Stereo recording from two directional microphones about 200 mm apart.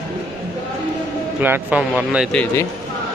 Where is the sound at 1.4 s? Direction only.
10° right (ahead or behind).